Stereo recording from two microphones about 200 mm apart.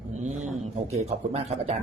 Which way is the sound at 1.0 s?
30° right (ahead or behind).